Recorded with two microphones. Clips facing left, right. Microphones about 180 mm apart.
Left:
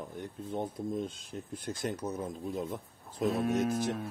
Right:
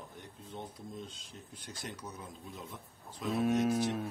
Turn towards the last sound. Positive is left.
turn(degrees=0)  # may be behind; listen again after turning